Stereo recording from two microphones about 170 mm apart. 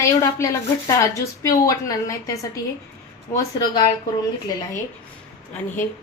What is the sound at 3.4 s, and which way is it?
Speech, 20° left (ahead or behind).